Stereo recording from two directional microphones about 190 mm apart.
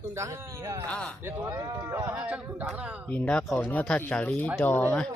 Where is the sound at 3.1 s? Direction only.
5° left (ahead or behind).